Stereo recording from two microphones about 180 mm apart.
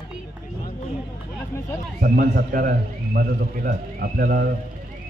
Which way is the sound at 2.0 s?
55° right (ahead or behind).